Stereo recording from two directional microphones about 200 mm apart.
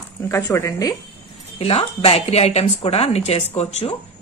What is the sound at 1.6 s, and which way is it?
A woman's voice, 30° left (ahead or behind).